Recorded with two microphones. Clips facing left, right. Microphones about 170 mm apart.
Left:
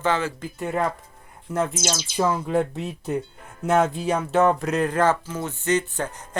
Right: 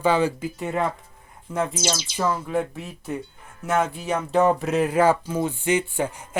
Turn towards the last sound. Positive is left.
turn(degrees=-10)  # may be behind; listen again after turning